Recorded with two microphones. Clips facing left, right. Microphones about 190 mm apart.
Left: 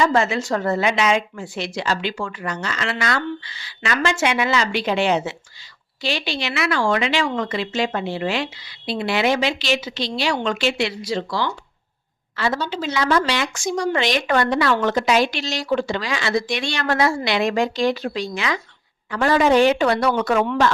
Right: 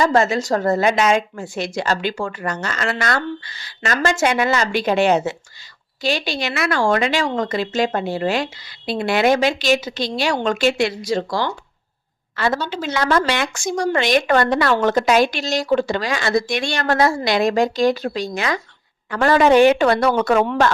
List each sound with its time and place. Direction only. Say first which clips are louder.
0.0 s speech: right 2 dB; 40° right (ahead or behind)
19.1 s speech: right 3 dB; 55° right (ahead or behind)